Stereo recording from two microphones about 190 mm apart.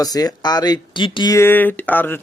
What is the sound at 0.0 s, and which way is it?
Speech, 20° left (ahead or behind).